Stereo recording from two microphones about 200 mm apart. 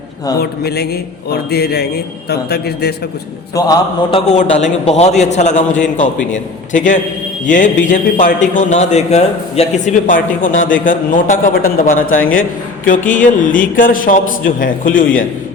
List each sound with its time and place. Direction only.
0.3 s a man's voice: 55° left (ahead or behind)
3.5 s a man's voice: 15° left (ahead or behind)
4.3 s a man's voice: 35° left (ahead or behind)
10.5 s a man's voice: 75° left (ahead or behind)
10.8 s a man's voice: 40° left (ahead or behind)